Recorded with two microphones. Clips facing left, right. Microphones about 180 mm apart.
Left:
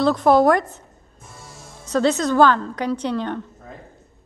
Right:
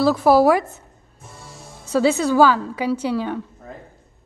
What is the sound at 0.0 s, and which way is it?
Speech, 5° right (ahead or behind).